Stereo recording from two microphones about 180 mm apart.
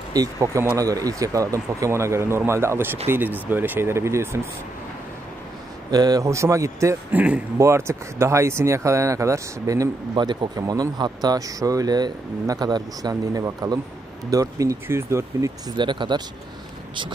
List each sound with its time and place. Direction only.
0.1 s a man's voice: 20° right (ahead or behind)
5.9 s a man's voice: 20° right (ahead or behind)